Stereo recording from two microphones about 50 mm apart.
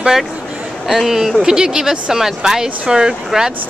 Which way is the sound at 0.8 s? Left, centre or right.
Centre.